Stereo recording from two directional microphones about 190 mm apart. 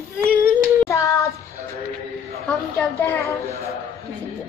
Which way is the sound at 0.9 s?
15° left (ahead or behind).